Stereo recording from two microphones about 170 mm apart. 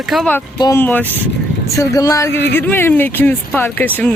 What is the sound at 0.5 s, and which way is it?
Speech, 25° left (ahead or behind).